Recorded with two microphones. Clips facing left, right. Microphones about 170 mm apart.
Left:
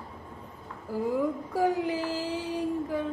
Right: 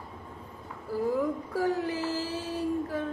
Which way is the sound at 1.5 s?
15° left (ahead or behind).